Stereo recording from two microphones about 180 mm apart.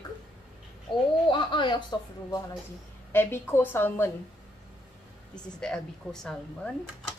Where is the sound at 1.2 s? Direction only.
25° left (ahead or behind).